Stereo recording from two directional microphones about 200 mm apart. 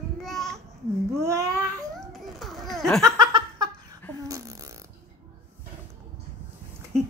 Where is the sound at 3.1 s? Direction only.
20° right (ahead or behind).